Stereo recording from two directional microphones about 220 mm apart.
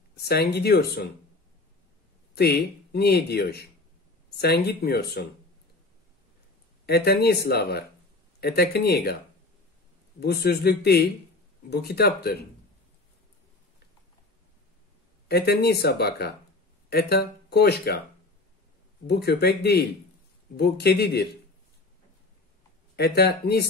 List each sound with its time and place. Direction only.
0.1 s speech: 45° left (ahead or behind)
2.3 s speech: 45° left (ahead or behind)
6.9 s speech: 45° left (ahead or behind)
10.2 s speech: 45° left (ahead or behind)
15.2 s speech: 45° left (ahead or behind)
19.0 s speech: 45° left (ahead or behind)
22.9 s speech: 45° left (ahead or behind)